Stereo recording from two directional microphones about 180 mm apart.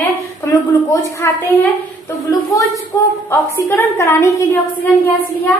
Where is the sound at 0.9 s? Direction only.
10° left (ahead or behind).